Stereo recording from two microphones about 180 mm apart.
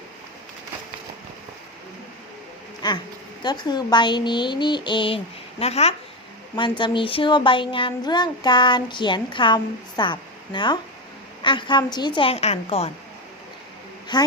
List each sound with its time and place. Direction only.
2.8 s a child's voice: 25° left (ahead or behind)
14.1 s a child's voice: 25° left (ahead or behind)